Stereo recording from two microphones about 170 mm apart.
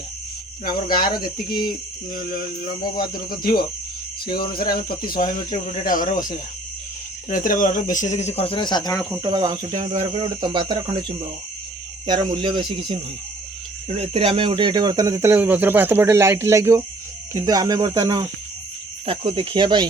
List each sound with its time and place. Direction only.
0.6 s speech: 55° left (ahead or behind)
3.2 s speech: 60° left (ahead or behind)
7.3 s speech: 50° left (ahead or behind); by 9.0 s 20° left (ahead or behind)
9.2 s speech: 25° right (ahead or behind)
12.0 s speech: 30° right (ahead or behind)
13.8 s speech: 40° right (ahead or behind)